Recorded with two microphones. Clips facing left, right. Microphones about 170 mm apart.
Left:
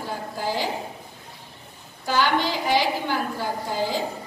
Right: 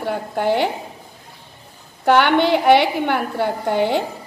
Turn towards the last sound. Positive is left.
turn(degrees=-65)  # may be behind; listen again after turning